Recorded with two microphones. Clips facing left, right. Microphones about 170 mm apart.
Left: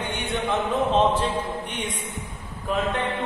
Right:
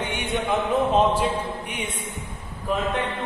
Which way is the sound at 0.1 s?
15° right (ahead or behind).